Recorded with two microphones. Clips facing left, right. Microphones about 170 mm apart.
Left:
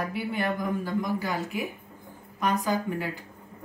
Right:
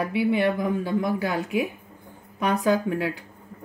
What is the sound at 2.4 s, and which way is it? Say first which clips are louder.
Speech: right 4 dB; 65° right (ahead or behind).